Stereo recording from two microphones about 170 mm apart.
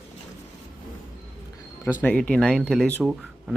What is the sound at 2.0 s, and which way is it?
Speech, 10° left (ahead or behind).